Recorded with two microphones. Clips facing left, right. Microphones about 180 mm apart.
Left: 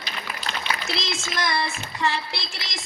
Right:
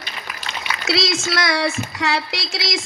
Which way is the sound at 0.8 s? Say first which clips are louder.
Right 9 dB; 90° right.